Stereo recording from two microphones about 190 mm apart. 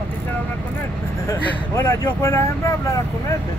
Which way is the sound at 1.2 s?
15° left (ahead or behind).